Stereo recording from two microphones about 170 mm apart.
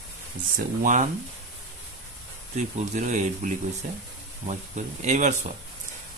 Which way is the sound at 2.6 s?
45° right (ahead or behind).